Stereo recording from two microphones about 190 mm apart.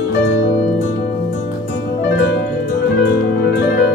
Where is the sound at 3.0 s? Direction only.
60° left (ahead or behind).